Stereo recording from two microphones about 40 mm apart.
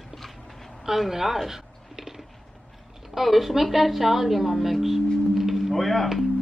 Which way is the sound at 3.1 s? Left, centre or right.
Centre.